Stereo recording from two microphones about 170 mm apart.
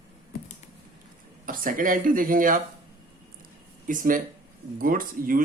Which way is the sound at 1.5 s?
55° right (ahead or behind).